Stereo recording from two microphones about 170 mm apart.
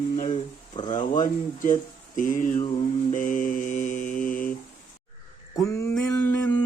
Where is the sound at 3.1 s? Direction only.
50° left (ahead or behind).